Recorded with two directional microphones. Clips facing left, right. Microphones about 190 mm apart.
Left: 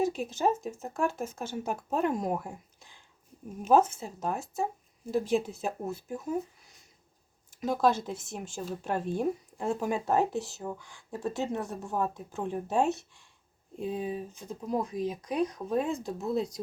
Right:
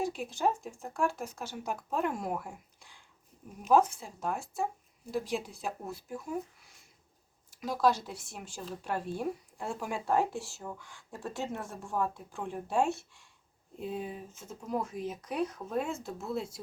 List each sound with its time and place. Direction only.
0.0 s speech: 20° left (ahead or behind)
7.6 s speech: 25° left (ahead or behind)